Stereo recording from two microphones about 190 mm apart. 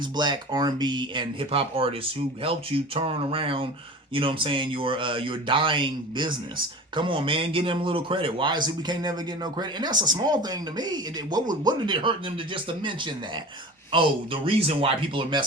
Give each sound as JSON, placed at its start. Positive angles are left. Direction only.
{"t": 0.2, "sound": "speech", "side_deg": -20}